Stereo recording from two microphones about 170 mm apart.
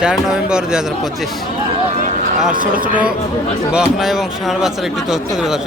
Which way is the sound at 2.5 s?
55° right (ahead or behind).